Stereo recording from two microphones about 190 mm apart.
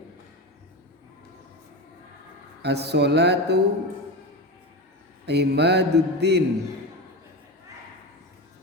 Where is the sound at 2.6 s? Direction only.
60° right (ahead or behind).